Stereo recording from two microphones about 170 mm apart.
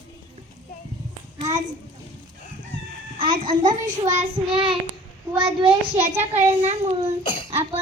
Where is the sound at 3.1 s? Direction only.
55° right (ahead or behind).